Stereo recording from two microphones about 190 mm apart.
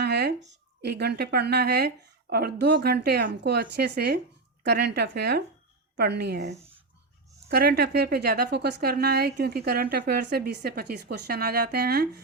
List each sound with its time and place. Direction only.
0.0 s a sound: 60° right (ahead or behind)
0.8 s a woman's voice: 60° right (ahead or behind)
7.5 s a woman's voice: 55° right (ahead or behind)